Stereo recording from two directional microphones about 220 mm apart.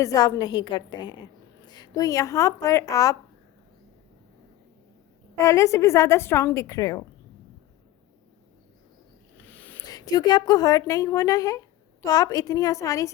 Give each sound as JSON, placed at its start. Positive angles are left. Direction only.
{"t": 0.0, "sound": "a woman's voice", "side_deg": 15}
{"t": 5.4, "sound": "a woman's voice", "side_deg": 15}
{"t": 9.5, "sound": "a woman's voice", "side_deg": 10}